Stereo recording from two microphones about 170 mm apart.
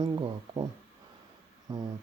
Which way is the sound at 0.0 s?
25° right (ahead or behind).